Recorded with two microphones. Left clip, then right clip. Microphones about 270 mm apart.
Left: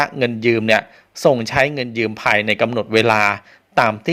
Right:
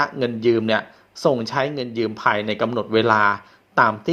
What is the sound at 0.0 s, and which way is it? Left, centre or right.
Speech, left.